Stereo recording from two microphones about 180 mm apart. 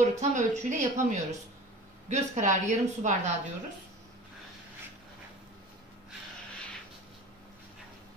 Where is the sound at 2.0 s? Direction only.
40° right (ahead or behind).